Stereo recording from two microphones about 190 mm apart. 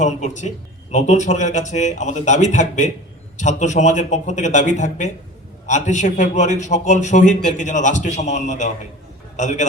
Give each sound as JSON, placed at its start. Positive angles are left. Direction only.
{"t": 0.0, "sound": "a man's voice", "side_deg": 40}